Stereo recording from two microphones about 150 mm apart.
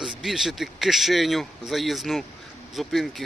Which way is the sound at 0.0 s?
Centre (ahead or behind).